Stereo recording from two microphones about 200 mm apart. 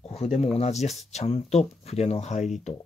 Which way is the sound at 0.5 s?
35° left (ahead or behind).